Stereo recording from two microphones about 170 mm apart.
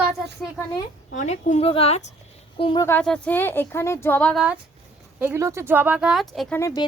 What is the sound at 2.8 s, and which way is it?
A woman's voice, 10° left (ahead or behind).